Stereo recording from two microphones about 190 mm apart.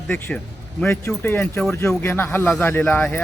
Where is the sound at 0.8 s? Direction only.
10° left (ahead or behind).